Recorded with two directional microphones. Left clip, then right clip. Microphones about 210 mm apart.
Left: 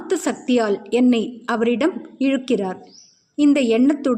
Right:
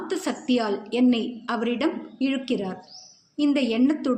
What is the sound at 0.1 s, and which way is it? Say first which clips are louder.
A woman's voice: left 6 dB; 50° left (ahead or behind).